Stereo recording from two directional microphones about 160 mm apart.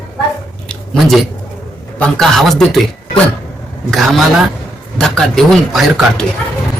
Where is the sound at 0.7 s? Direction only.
Centre (ahead or behind).